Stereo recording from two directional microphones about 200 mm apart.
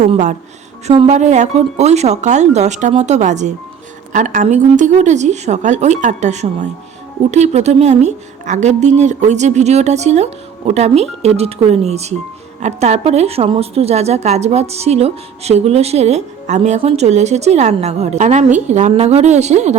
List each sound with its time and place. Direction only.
0.0 s a woman's voice: 35° right (ahead or behind)